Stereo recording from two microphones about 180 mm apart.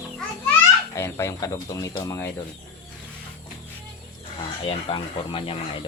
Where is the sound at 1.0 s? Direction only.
15° left (ahead or behind).